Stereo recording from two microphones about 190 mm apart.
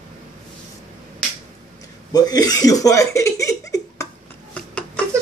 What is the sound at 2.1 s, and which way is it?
Speech, 20° left (ahead or behind).